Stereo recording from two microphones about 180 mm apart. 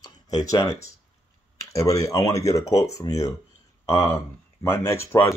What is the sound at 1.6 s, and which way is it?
Speech, 15° left (ahead or behind).